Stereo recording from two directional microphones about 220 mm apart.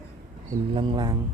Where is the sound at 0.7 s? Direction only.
20° right (ahead or behind).